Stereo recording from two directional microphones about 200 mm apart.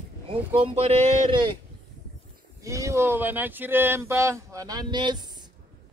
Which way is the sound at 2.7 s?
15° right (ahead or behind).